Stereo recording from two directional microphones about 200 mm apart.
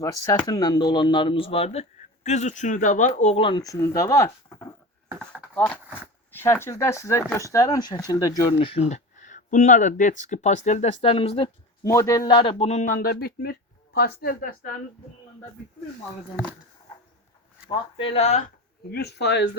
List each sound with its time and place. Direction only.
0.0 s speech: 15° left (ahead or behind); by 14.7 s 45° left (ahead or behind)
17.7 s speech: 25° left (ahead or behind); by 19.5 s 60° left (ahead or behind)